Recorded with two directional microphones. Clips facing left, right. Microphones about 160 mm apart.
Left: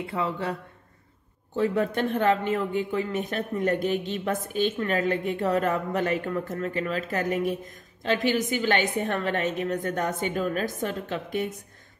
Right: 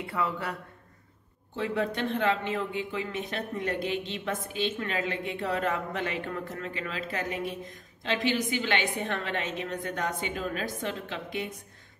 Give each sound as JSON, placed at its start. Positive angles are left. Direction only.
{"t": 0.0, "sound": "a man's voice", "side_deg": 25}
{"t": 1.6, "sound": "speech", "side_deg": 45}